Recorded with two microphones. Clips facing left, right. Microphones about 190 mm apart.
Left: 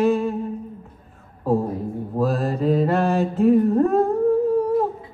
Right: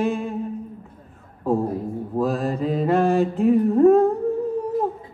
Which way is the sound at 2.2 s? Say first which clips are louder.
Left 1 dB; 15° right (ahead or behind).